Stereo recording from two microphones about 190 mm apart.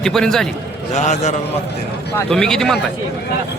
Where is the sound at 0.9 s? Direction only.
35° left (ahead or behind).